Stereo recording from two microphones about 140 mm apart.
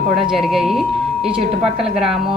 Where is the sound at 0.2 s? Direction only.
Centre (ahead or behind).